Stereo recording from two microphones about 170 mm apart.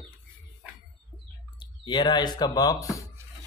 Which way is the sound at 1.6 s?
25° left (ahead or behind).